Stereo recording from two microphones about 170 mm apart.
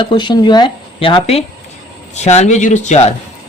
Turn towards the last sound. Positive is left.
turn(degrees=40)  # may be behind; listen again after turning